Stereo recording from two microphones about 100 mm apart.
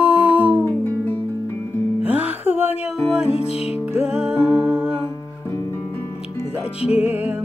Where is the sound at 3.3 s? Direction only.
90° left.